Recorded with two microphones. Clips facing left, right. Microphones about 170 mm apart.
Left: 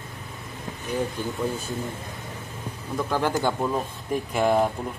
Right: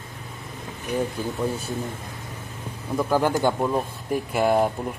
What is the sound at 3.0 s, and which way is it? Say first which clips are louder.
Speech: right 3 dB; 10° right (ahead or behind).